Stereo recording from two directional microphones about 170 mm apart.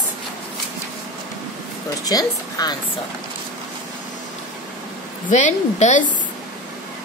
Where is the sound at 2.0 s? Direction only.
20° left (ahead or behind).